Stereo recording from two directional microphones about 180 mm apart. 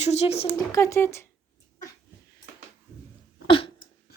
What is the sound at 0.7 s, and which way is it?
Speech, 15° left (ahead or behind).